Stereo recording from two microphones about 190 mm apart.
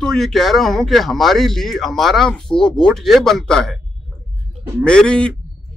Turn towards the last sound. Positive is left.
turn(degrees=5)  # may be behind; listen again after turning